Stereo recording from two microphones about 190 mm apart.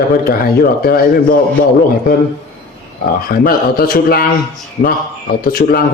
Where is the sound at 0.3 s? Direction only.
50° left (ahead or behind).